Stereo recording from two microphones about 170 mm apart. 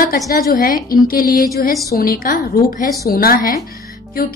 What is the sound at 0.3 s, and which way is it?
A woman's voice, 60° left (ahead or behind).